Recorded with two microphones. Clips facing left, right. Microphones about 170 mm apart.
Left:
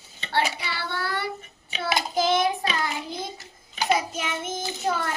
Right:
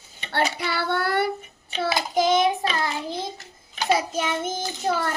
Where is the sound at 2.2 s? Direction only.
20° right (ahead or behind).